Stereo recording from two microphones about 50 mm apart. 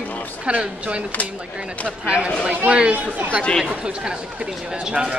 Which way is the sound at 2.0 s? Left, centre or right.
Right.